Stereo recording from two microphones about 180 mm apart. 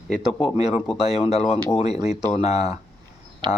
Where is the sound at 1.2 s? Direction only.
35° left (ahead or behind).